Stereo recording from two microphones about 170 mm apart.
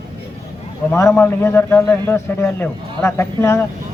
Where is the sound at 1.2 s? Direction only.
15° left (ahead or behind).